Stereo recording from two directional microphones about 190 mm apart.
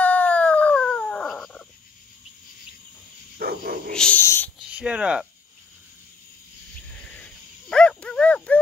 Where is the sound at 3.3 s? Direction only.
50° right (ahead or behind).